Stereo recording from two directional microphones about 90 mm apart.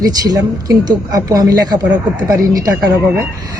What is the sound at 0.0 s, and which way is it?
A man's voice, 45° right (ahead or behind).